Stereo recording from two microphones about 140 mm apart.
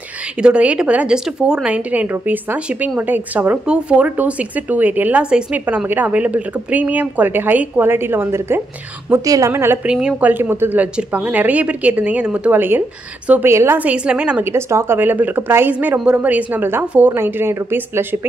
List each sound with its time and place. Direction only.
0.4 s speech: 10° right (ahead or behind)
14.5 s speech: 20° right (ahead or behind)